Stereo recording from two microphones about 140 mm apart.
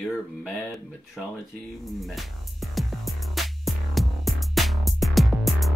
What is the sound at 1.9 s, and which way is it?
Music, centre (ahead or behind).